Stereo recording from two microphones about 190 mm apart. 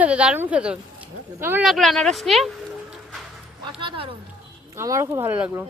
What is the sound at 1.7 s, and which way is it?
Speech, centre (ahead or behind).